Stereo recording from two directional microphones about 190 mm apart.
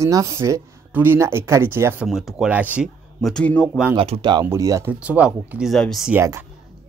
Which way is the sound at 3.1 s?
5° left (ahead or behind).